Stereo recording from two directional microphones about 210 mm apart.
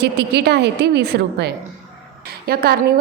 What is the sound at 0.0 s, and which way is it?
A woman's voice, 50° right (ahead or behind).